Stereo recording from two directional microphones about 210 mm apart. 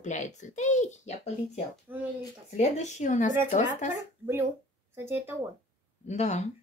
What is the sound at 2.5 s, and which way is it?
Speech, 35° left (ahead or behind).